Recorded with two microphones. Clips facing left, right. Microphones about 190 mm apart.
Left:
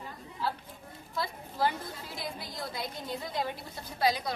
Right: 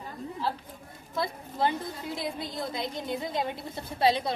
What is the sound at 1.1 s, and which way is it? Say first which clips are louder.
A woman's voice: right 4 dB; 25° right (ahead or behind).